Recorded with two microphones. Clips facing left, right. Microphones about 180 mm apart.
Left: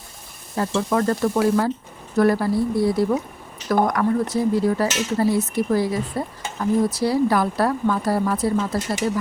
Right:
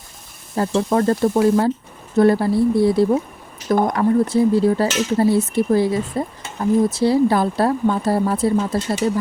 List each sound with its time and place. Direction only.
0.5 s speech: 35° right (ahead or behind)